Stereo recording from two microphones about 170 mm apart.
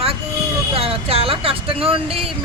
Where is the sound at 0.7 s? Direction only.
35° right (ahead or behind).